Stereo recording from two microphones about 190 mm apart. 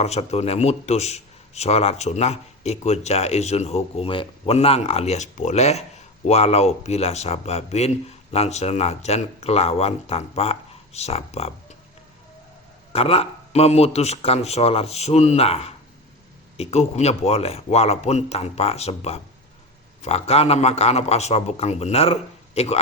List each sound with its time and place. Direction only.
0.0 s a man's voice: 35° left (ahead or behind)
12.9 s a man's voice: 30° left (ahead or behind)